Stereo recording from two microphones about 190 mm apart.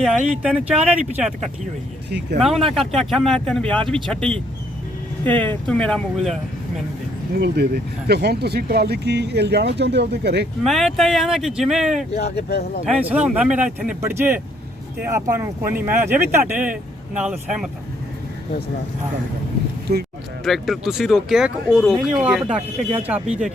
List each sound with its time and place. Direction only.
0.0 s speech: 5° right (ahead or behind)
2.0 s speech: 60° right (ahead or behind)
2.6 s speech: centre (ahead or behind)
7.3 s speech: 60° right (ahead or behind)
10.6 s speech: centre (ahead or behind)
12.1 s speech: 60° left (ahead or behind)
13.1 s speech: 5° right (ahead or behind)
19.9 s speech: 55° right (ahead or behind)
20.4 s speech: centre (ahead or behind)